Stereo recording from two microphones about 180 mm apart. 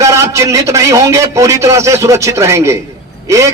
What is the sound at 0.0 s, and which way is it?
A man's voice, 15° right (ahead or behind).